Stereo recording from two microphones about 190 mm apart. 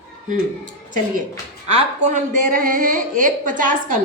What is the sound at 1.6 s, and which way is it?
A woman's voice, 35° right (ahead or behind).